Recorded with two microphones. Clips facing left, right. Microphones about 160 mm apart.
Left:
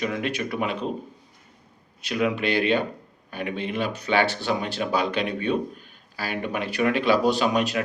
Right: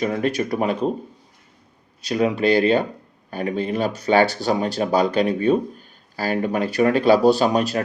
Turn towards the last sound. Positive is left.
turn(degrees=-40)  # may be behind; listen again after turning